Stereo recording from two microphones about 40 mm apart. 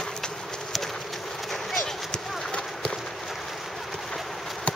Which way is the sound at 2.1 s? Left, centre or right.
Left.